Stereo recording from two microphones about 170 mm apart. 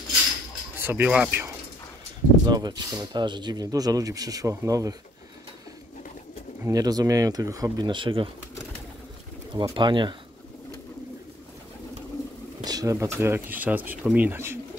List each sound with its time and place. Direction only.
0.7 s speech: 10° right (ahead or behind)
2.4 s speech: 25° right (ahead or behind)
6.6 s speech: 20° right (ahead or behind)
9.5 s speech: 30° right (ahead or behind)
12.6 s speech: 20° right (ahead or behind)